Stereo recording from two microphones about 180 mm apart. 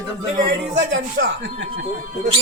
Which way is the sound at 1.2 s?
85° right.